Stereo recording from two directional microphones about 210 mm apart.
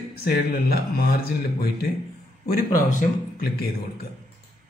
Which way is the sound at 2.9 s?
40° left (ahead or behind).